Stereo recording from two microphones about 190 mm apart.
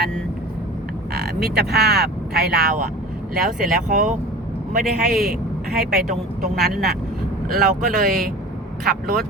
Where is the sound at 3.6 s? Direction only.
40° right (ahead or behind).